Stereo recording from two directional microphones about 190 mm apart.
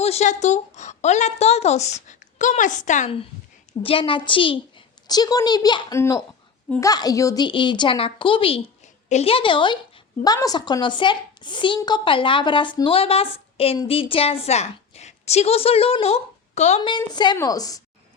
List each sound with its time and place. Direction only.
0.0 s a woman's voice: 35° left (ahead or behind)
16.9 s a woman's voice: 25° left (ahead or behind)